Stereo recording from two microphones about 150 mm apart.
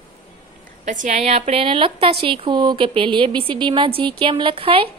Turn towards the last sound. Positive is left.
turn(degrees=-35)  # may be behind; listen again after turning